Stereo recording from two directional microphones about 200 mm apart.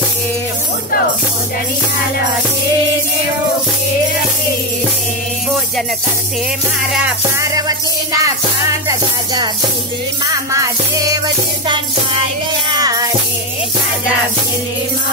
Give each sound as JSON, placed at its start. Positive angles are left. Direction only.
{"t": 7.3, "sound": "music", "side_deg": -15}
{"t": 12.8, "sound": "music", "side_deg": -20}